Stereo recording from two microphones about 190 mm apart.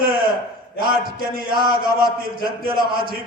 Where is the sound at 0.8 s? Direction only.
50° right (ahead or behind).